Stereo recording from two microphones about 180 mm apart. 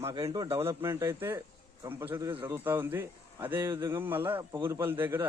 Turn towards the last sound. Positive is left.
turn(degrees=-10)  # may be behind; listen again after turning